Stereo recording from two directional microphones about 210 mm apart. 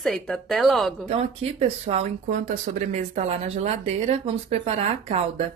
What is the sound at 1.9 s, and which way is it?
Speech, 35° right (ahead or behind).